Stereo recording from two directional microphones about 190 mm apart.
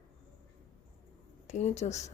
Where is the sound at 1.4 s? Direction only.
35° left (ahead or behind).